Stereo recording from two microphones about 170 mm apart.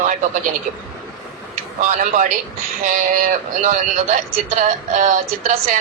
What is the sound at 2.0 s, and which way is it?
Speech, 45° right (ahead or behind).